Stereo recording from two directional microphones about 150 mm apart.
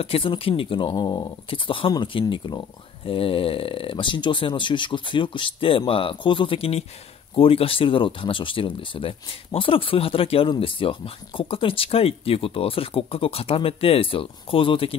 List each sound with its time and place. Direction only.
0.0 s speech: 40° left (ahead or behind)